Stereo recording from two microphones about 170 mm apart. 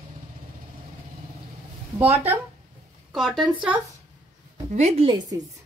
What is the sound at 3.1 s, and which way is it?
Speech, centre (ahead or behind).